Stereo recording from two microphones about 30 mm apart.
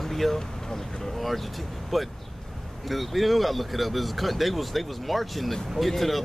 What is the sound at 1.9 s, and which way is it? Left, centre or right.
Speech, centre.